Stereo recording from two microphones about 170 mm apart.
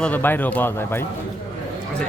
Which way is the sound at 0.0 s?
10° left (ahead or behind).